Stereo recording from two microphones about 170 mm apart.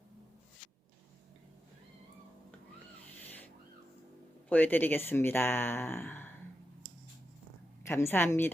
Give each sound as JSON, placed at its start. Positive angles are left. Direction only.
{"t": 4.4, "sound": "speech", "side_deg": 10}
{"t": 7.9, "sound": "speech", "side_deg": 15}